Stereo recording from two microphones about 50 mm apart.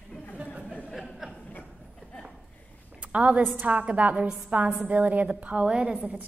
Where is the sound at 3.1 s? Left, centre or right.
Right.